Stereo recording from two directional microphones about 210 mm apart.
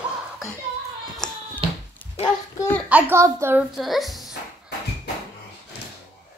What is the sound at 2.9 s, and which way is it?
Speech, 10° right (ahead or behind).